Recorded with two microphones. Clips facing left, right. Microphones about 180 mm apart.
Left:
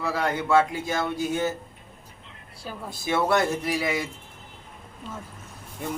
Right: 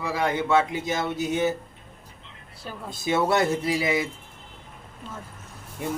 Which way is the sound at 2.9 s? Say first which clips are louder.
Right 1 dB; 20° right (ahead or behind).